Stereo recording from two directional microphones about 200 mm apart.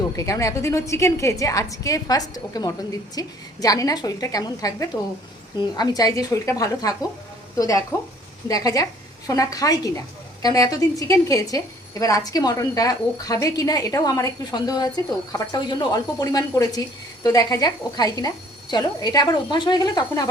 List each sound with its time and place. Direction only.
0.2 s a woman's voice: 15° left (ahead or behind)